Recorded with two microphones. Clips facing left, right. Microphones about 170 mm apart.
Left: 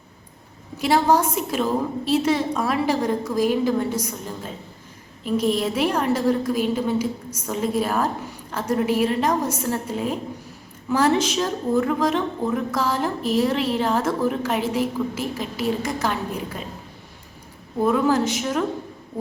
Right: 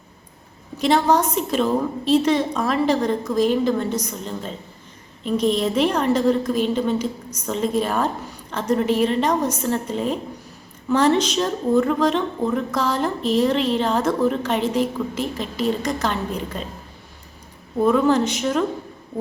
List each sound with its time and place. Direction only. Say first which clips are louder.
0.8 s a woman's voice: right 1 dB; 5° left (ahead or behind)
17.8 s speech: right 2 dB; 5° left (ahead or behind)